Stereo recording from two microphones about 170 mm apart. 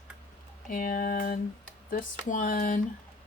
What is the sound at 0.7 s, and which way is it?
Speech, 55° left (ahead or behind).